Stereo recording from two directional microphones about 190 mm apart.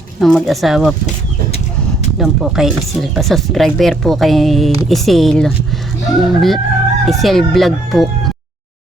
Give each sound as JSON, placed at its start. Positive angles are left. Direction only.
{"t": 0.2, "sound": "speech", "side_deg": 0}
{"t": 1.5, "sound": "a sound", "side_deg": 35}
{"t": 2.1, "sound": "speech", "side_deg": 0}